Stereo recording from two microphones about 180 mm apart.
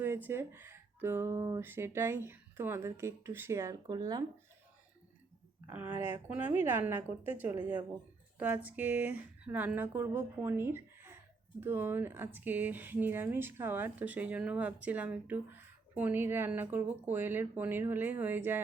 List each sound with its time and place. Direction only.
0.0 s speech: 10° right (ahead or behind)
5.6 s speech: 10° right (ahead or behind)